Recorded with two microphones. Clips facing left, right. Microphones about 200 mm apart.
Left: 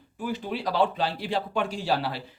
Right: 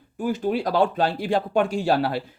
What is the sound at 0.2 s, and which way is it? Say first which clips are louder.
A man's voice: right 7 dB; 45° right (ahead or behind).